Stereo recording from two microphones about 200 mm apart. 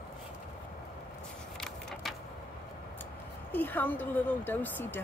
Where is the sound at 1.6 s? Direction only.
Centre (ahead or behind).